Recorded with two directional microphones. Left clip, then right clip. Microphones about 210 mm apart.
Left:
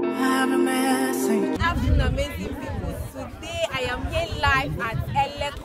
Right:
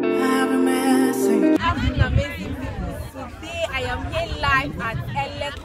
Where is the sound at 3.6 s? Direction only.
25° left (ahead or behind).